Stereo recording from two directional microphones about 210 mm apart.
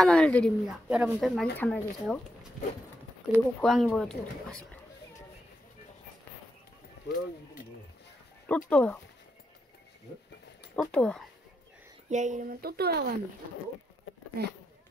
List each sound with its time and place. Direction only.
0.0 s speech: 5° left (ahead or behind)
0.8 s speech: 5° right (ahead or behind)
3.3 s speech: centre (ahead or behind)
8.5 s speech: 5° left (ahead or behind)
10.8 s speech: 5° left (ahead or behind)
12.1 s speech: 35° right (ahead or behind)
14.4 s speech: 50° right (ahead or behind)